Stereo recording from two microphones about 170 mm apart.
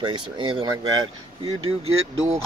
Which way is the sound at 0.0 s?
30° right (ahead or behind).